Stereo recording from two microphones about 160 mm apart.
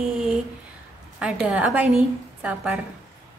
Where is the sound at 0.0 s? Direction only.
5° right (ahead or behind).